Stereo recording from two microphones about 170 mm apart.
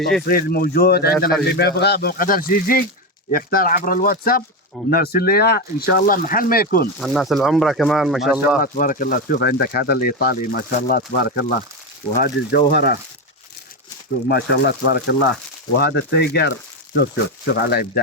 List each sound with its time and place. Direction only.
0.3 s speech: 60° left (ahead or behind)
7.0 s speech: centre (ahead or behind)
8.6 s speech: 55° left (ahead or behind)
14.3 s speech: 70° left (ahead or behind)